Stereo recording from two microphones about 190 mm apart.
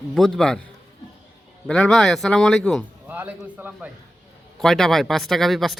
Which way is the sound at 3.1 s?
10° right (ahead or behind).